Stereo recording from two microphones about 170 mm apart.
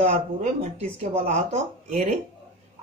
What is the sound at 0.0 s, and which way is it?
Speech, 45° right (ahead or behind).